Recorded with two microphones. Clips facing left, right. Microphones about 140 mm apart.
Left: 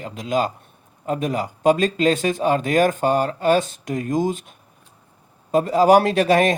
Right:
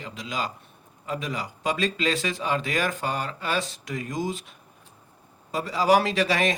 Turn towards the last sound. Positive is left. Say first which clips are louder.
# left 7 dB
turn(degrees=50)  # may be behind; listen again after turning